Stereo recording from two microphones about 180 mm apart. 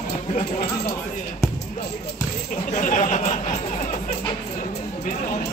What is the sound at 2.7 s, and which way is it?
Speech, 40° left (ahead or behind).